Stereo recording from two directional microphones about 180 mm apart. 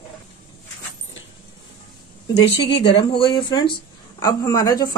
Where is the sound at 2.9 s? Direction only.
25° left (ahead or behind).